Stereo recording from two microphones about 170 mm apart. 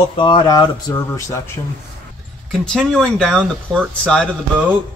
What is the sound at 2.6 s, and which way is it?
Speech, 5° left (ahead or behind).